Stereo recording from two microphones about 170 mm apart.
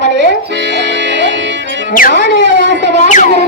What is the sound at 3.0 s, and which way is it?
Music, 45° left (ahead or behind).